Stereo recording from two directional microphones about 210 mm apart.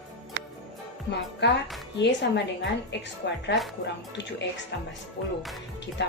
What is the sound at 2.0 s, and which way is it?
A woman's voice, 55° left (ahead or behind).